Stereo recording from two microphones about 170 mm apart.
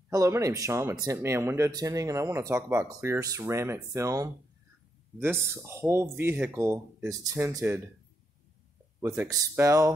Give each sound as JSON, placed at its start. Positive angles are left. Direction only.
{"t": 0.1, "sound": "speech", "side_deg": -20}
{"t": 9.0, "sound": "speech", "side_deg": -15}